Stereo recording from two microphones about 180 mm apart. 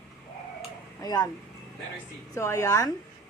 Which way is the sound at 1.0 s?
20° left (ahead or behind).